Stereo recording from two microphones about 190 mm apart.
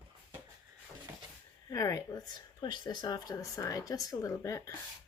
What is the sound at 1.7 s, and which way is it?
Speech, 15° left (ahead or behind).